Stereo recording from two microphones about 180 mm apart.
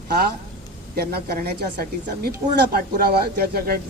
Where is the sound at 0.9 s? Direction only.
60° right (ahead or behind).